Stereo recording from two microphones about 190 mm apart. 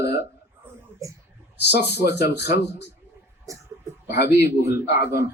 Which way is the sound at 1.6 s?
60° left (ahead or behind).